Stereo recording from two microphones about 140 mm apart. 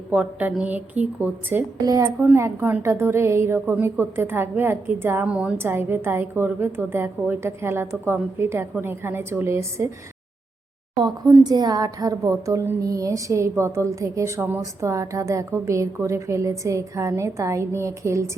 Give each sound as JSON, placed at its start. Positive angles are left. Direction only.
{"t": 0.1, "sound": "a woman's voice", "side_deg": -10}
{"t": 1.8, "sound": "a woman's voice", "side_deg": -25}
{"t": 10.9, "sound": "a woman's voice", "side_deg": -30}